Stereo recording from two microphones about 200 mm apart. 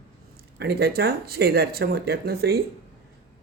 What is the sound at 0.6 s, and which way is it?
Speech, 50° right (ahead or behind).